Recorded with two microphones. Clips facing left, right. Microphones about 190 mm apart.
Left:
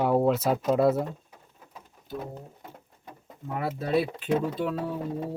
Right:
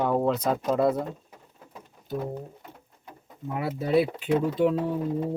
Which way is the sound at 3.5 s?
10° right (ahead or behind).